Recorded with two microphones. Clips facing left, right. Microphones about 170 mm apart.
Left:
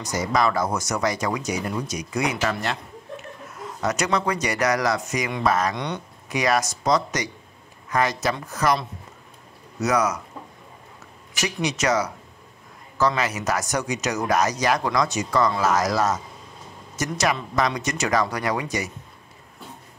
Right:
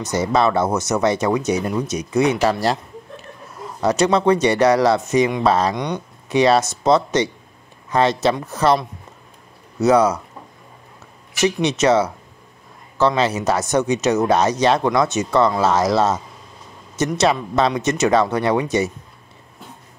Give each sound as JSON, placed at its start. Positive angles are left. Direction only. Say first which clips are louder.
{"t": 0.0, "sound": "speech", "louder": "right 5 dB", "side_deg": -25}
{"t": 11.4, "sound": "speech", "louder": "right 7 dB", "side_deg": -25}